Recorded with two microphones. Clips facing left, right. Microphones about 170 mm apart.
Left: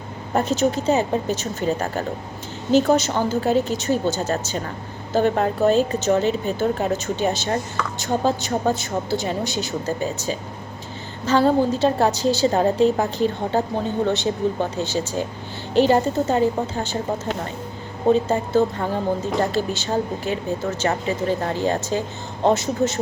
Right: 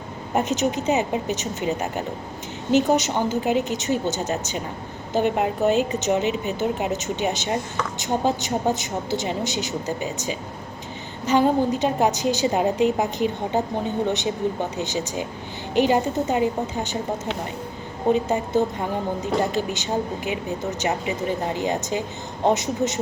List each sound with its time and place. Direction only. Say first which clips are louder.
0.3 s a woman's voice: left 2 dB; 15° right (ahead or behind)
18.1 s a woman's voice: left 2 dB; 15° right (ahead or behind)